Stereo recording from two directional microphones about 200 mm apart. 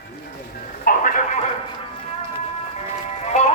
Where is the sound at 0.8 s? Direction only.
40° left (ahead or behind).